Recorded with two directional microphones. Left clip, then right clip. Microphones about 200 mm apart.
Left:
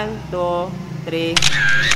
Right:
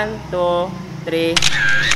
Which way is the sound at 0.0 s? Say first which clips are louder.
Right 3 dB; 5° left (ahead or behind).